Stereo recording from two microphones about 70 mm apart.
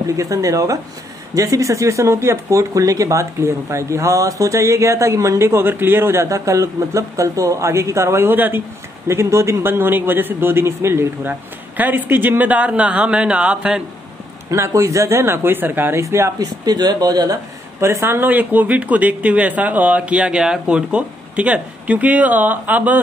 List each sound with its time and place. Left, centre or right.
0.2 s speech: right
9.0 s speech: right
11.7 s speech: right
14.5 s speech: right
16.0 s speech: right
16.3 s speech: right
17.7 s speech: right